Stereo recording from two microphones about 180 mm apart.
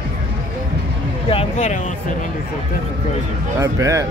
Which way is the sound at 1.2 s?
30° left (ahead or behind).